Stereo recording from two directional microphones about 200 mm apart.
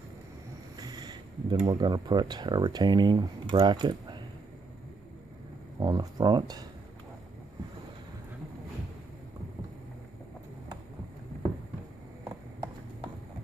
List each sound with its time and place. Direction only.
0.7 s a sound: 20° right (ahead or behind)
1.6 s speech: 20° right (ahead or behind)
5.8 s speech: 20° right (ahead or behind)